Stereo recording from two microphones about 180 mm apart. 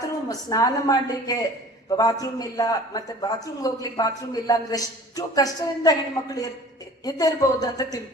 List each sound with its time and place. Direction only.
0.3 s a man's voice: 20° left (ahead or behind)